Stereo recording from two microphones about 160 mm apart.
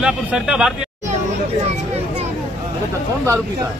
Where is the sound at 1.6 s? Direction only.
45° right (ahead or behind).